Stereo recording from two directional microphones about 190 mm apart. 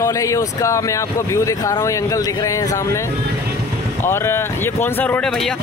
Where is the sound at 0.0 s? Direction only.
15° left (ahead or behind).